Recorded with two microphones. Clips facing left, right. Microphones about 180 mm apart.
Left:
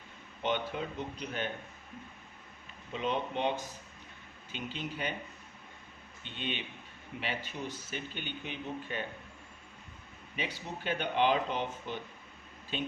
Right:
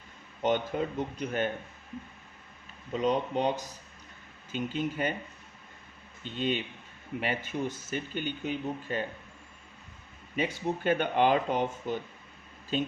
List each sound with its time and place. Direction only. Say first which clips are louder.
0.4 s speech: right 5 dB; 45° right (ahead or behind)
2.9 s speech: right 6 dB; 40° right (ahead or behind)
6.2 s speech: right 8 dB; 40° right (ahead or behind)
10.3 s speech: right 9 dB; 45° right (ahead or behind)